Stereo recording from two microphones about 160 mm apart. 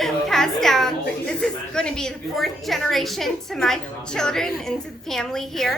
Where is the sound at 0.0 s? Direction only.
5° left (ahead or behind).